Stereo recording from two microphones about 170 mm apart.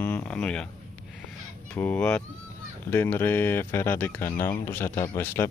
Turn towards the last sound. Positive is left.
turn(degrees=15)  # may be behind; listen again after turning